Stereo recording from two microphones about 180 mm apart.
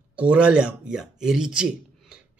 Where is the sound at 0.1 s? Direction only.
5° right (ahead or behind).